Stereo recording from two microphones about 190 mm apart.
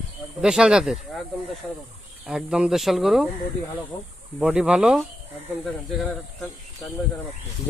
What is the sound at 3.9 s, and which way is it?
Speech, 20° left (ahead or behind).